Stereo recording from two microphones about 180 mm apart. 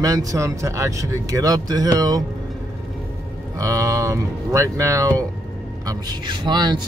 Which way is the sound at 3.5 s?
20° right (ahead or behind).